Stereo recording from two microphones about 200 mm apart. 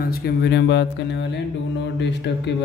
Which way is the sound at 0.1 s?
55° left (ahead or behind).